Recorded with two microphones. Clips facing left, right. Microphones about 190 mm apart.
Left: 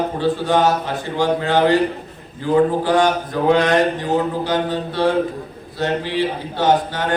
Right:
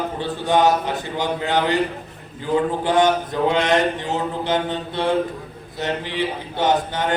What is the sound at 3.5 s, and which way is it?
A man's voice, 20° right (ahead or behind).